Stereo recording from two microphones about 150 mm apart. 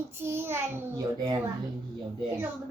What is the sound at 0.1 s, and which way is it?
Speech, 15° right (ahead or behind).